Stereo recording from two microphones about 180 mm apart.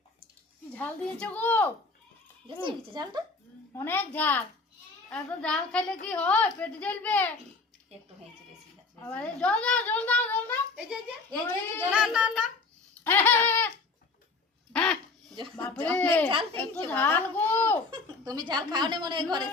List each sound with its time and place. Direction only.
0.7 s a child's voice: 5° left (ahead or behind)
2.5 s a woman's voice: 30° right (ahead or behind)
3.8 s a child's voice: 10° left (ahead or behind)
9.0 s a child's voice: 5° left (ahead or behind)
11.9 s a woman's voice: 5° right (ahead or behind)
13.1 s a child's voice: 10° left (ahead or behind)
14.7 s a sound: 5° left (ahead or behind)
15.7 s a child's voice: 10° left (ahead or behind)
16.3 s speech: 30° right (ahead or behind)
16.6 s a child's voice: 10° left (ahead or behind)
17.9 s a woman's voice: 25° right (ahead or behind)